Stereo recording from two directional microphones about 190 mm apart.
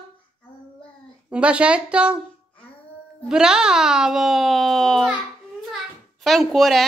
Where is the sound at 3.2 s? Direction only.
5° right (ahead or behind).